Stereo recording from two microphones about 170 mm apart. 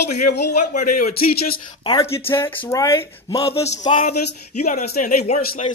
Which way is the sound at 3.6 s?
40° left (ahead or behind).